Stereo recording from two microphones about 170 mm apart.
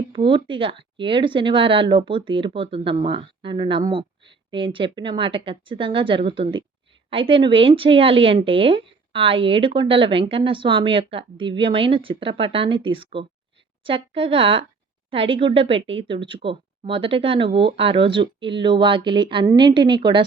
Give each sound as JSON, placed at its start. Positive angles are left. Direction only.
{"t": 0.1, "sound": "speech", "side_deg": -30}